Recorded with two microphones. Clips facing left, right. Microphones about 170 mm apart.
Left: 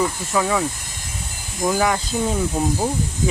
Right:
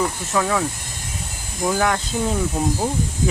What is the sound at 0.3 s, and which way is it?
Speech, 5° left (ahead or behind).